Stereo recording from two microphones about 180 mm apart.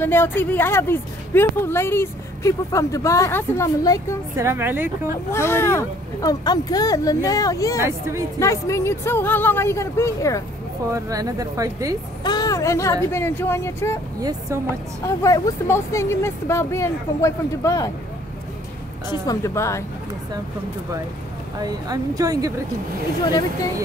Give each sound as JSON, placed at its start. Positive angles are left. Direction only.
{"t": 0.0, "sound": "speech", "side_deg": 10}
{"t": 4.4, "sound": "speech", "side_deg": -15}
{"t": 5.3, "sound": "speech", "side_deg": 15}
{"t": 7.8, "sound": "speech", "side_deg": -15}
{"t": 8.4, "sound": "speech", "side_deg": 15}
{"t": 10.9, "sound": "speech", "side_deg": -20}
{"t": 12.2, "sound": "speech", "side_deg": 20}
{"t": 15.0, "sound": "speech", "side_deg": 15}
{"t": 19.0, "sound": "speech", "side_deg": 20}
{"t": 21.5, "sound": "speech", "side_deg": -20}